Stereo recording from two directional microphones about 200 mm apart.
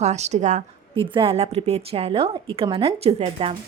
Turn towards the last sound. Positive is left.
turn(degrees=-30)  # may be behind; listen again after turning